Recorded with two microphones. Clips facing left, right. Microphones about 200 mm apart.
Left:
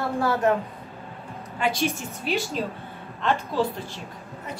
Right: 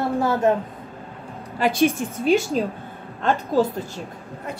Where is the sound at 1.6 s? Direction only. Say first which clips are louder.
Right 6 dB; 50° right (ahead or behind).